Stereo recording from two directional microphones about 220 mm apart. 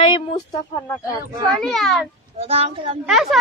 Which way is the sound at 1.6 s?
Centre (ahead or behind).